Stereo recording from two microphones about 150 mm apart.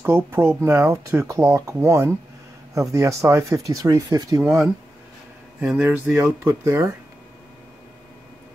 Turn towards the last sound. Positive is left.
turn(degrees=-15)  # may be behind; listen again after turning